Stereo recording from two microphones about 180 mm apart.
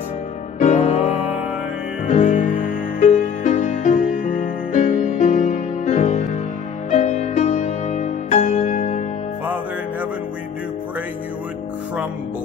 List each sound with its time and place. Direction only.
0.6 s music: 40° left (ahead or behind)